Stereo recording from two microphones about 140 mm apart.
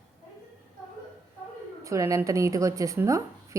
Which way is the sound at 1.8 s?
20° right (ahead or behind).